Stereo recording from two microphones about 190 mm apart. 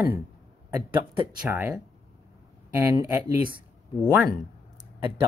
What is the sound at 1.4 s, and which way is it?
Speech, 10° right (ahead or behind).